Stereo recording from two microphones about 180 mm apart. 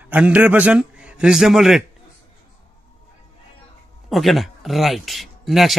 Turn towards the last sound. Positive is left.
turn(degrees=0)  # may be behind; listen again after turning